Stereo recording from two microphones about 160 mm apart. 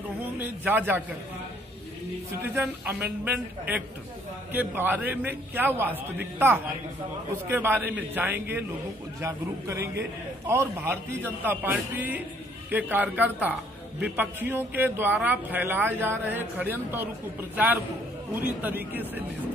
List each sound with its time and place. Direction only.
0.4 s a man's voice: 10° right (ahead or behind)
2.4 s a man's voice: 10° right (ahead or behind)